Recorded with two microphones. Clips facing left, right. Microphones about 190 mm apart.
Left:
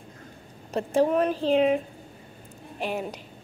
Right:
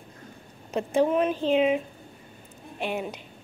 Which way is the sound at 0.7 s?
40° left (ahead or behind).